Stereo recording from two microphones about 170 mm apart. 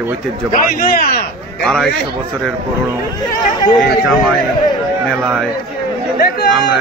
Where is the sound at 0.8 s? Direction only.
55° left (ahead or behind).